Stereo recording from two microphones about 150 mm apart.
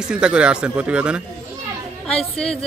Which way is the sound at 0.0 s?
5° right (ahead or behind).